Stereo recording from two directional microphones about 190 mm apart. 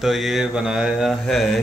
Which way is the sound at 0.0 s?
Centre (ahead or behind).